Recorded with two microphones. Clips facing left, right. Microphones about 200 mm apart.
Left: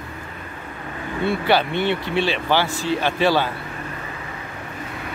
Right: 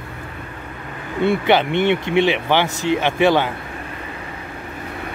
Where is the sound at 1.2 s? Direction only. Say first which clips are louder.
Right 3 dB; 20° right (ahead or behind).